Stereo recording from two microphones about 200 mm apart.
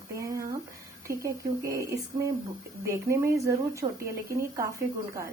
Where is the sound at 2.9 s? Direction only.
15° right (ahead or behind).